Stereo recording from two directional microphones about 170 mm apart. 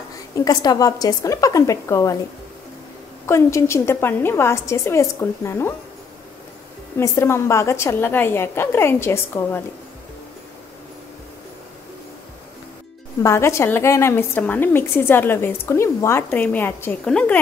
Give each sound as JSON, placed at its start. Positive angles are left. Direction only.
{"t": 0.3, "sound": "a woman's voice", "side_deg": 20}
{"t": 3.3, "sound": "a woman's voice", "side_deg": 15}
{"t": 7.0, "sound": "a woman's voice", "side_deg": 15}
{"t": 13.2, "sound": "a woman's voice", "side_deg": 15}